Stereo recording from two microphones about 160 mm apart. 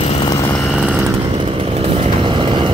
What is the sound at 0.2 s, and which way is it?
Vehicle, 25° left (ahead or behind).